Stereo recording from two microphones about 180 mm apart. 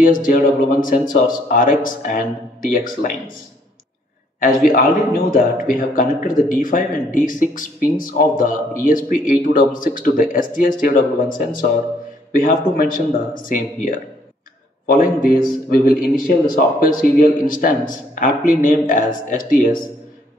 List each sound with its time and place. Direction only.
0.0 s a man's voice: 50° left (ahead or behind)
5.3 s a man's voice: 50° left (ahead or behind)